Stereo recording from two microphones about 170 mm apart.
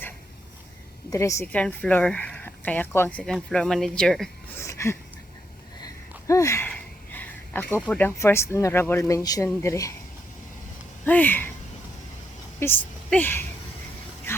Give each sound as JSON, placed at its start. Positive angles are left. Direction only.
{"t": 1.1, "sound": "speech", "side_deg": 15}
{"t": 4.5, "sound": "a sound", "side_deg": 15}
{"t": 7.9, "sound": "speech", "side_deg": 10}
{"t": 11.0, "sound": "speech", "side_deg": 10}
{"t": 13.1, "sound": "speech", "side_deg": 10}
{"t": 14.3, "sound": "vehicle", "side_deg": 15}